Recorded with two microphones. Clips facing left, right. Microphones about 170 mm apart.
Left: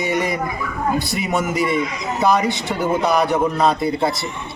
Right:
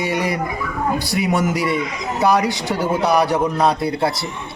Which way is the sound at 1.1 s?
70° right (ahead or behind).